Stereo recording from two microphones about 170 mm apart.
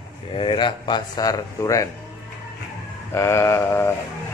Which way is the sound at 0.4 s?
30° left (ahead or behind).